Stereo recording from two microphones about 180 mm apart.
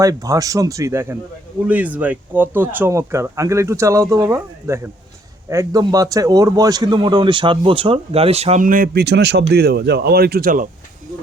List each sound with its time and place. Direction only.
0.0 s speech: 20° right (ahead or behind); by 8.6 s 35° right (ahead or behind)
8.6 s speech: 50° right (ahead or behind)